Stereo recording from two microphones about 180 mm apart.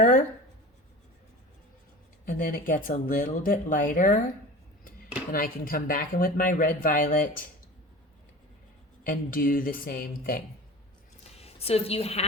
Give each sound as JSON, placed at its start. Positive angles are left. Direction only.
{"t": 2.2, "sound": "speech", "side_deg": 50}
{"t": 5.3, "sound": "speech", "side_deg": 50}
{"t": 9.0, "sound": "speech", "side_deg": 50}
{"t": 11.3, "sound": "a woman's voice", "side_deg": 35}